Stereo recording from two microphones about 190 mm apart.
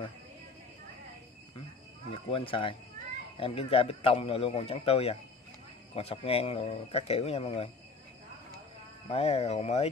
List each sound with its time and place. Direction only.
2.1 s a man's voice: 30° left (ahead or behind)
9.1 s a man's voice: 35° left (ahead or behind)